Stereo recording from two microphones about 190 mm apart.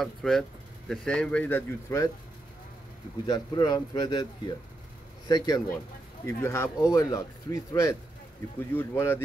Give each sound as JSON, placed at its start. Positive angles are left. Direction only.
{"t": 0.0, "sound": "speech", "side_deg": 0}
{"t": 3.3, "sound": "speech", "side_deg": 20}